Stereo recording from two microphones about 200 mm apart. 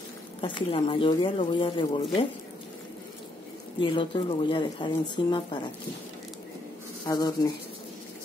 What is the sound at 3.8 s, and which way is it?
Speech, 25° left (ahead or behind).